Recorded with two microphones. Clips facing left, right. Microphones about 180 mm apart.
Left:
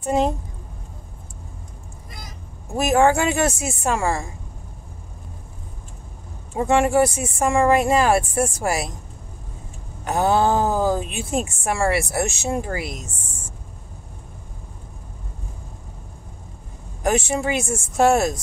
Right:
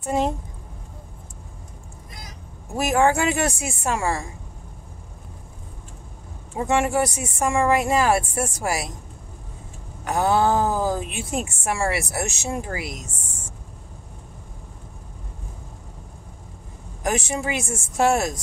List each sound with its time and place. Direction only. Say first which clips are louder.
0.0 s a woman's voice: left 3 dB; 20° left (ahead or behind)
2.7 s speech: left 2 dB; 20° left (ahead or behind)
6.9 s speech: left 5 dB; 30° left (ahead or behind)
10.0 s speech: left 1 dB; 20° left (ahead or behind)
17.0 s speech: left 4 dB; 30° left (ahead or behind)